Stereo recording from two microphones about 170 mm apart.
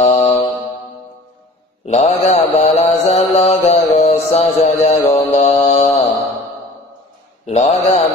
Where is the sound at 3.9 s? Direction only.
40° left (ahead or behind).